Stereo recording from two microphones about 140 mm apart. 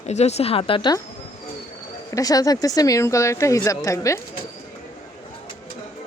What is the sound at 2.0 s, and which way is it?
Speech, 25° left (ahead or behind).